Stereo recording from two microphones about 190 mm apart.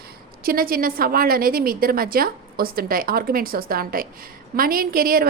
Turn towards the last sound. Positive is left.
turn(degrees=-50)  # may be behind; listen again after turning